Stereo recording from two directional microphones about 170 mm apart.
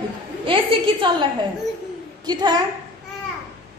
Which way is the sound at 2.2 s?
25° right (ahead or behind).